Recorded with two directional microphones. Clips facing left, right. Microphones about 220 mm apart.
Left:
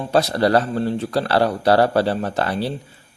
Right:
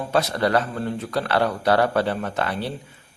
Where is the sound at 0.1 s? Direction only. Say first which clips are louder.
Left 4 dB; 35° left (ahead or behind).